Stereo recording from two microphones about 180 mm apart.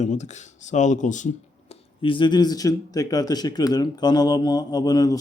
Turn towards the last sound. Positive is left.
turn(degrees=20)  # may be behind; listen again after turning